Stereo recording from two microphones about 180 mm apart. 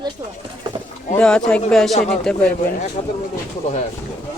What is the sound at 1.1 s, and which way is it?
Speech, 5° left (ahead or behind).